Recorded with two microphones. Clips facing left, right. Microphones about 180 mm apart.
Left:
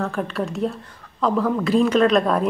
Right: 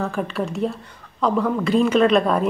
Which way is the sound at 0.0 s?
Centre (ahead or behind).